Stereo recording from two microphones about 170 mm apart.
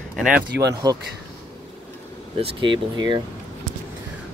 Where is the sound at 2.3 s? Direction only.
30° right (ahead or behind).